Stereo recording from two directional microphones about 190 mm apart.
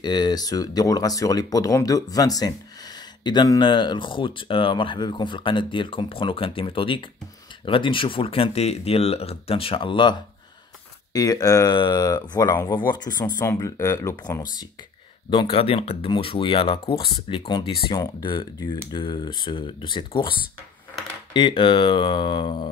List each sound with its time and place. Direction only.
0.0 s speech: 20° left (ahead or behind)
11.1 s speech: 20° left (ahead or behind)
15.2 s speech: 25° left (ahead or behind)